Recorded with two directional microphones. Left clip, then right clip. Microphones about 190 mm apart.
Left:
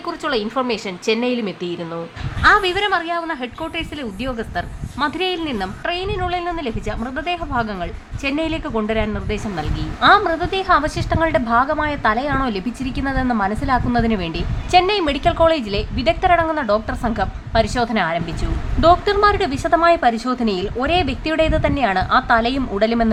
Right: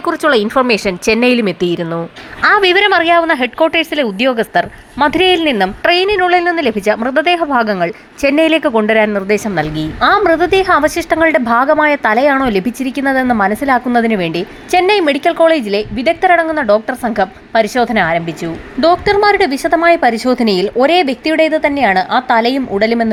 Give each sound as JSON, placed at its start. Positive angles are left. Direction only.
{"t": 0.0, "sound": "a woman's voice", "side_deg": -30}